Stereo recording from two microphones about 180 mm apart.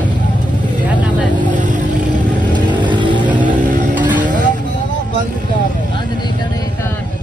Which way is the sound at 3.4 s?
45° right (ahead or behind).